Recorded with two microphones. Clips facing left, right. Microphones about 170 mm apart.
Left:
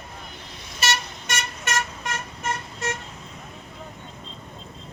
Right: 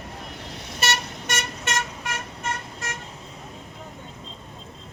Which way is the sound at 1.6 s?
25° right (ahead or behind).